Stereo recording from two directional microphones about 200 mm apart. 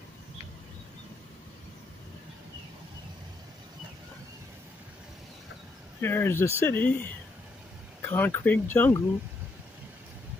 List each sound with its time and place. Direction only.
5.9 s speech: 10° left (ahead or behind)
8.0 s speech: 10° left (ahead or behind)